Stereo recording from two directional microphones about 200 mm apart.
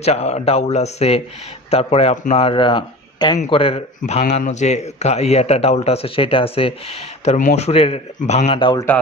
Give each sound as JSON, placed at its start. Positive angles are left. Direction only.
{"t": 0.0, "sound": "speech", "side_deg": 30}